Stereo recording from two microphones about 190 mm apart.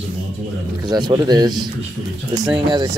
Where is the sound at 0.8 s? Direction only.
20° right (ahead or behind).